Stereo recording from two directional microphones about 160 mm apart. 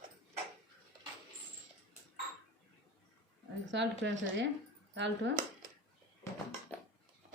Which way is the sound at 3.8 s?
90° right.